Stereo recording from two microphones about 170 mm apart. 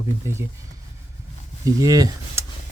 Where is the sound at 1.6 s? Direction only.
20° right (ahead or behind).